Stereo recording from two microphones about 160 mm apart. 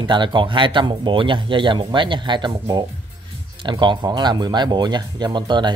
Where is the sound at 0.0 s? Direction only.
30° right (ahead or behind).